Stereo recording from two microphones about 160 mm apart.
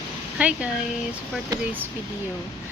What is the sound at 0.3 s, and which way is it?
Speech, 10° right (ahead or behind).